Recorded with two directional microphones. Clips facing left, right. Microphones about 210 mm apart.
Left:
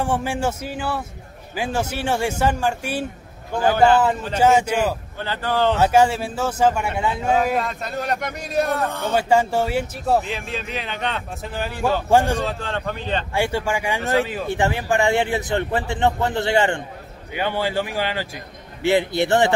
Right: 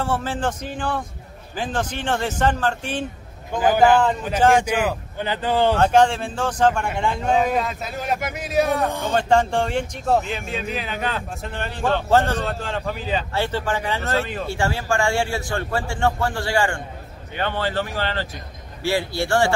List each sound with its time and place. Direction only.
0.0 s speech: 15° left (ahead or behind)
3.5 s a man's voice: 10° right (ahead or behind)
4.4 s speech: 5° left (ahead or behind)
4.7 s a man's voice: 10° right (ahead or behind)
5.8 s speech: 5° left (ahead or behind)
12.4 s speech: centre (ahead or behind)
13.3 s speech: 10° left (ahead or behind)
14.2 s speech: centre (ahead or behind)
14.5 s a man's voice: 20° left (ahead or behind)
17.3 s a man's voice: 10° left (ahead or behind)